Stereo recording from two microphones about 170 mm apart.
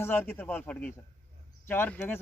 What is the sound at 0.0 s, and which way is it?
A man's voice, 10° left (ahead or behind).